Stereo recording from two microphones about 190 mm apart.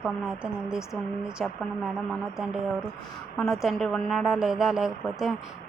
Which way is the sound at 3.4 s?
Centre (ahead or behind).